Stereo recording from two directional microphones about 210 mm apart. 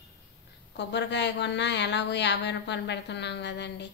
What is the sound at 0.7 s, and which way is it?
Speech, 55° left (ahead or behind).